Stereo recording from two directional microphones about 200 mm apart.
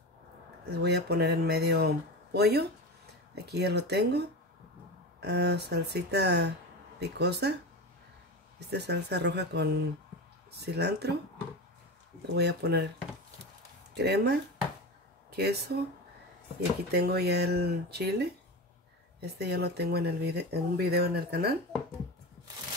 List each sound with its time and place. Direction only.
0.7 s speech: 55° right (ahead or behind)
8.5 s speech: 55° right (ahead or behind)
12.4 s speech: 55° right (ahead or behind)
13.9 s speech: 55° right (ahead or behind)
16.9 s speech: 50° right (ahead or behind)